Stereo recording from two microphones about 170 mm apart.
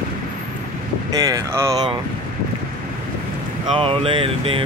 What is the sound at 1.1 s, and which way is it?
Speech, 20° right (ahead or behind).